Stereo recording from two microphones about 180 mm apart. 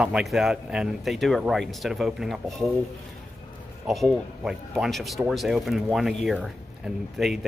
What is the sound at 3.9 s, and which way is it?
Speech, centre (ahead or behind).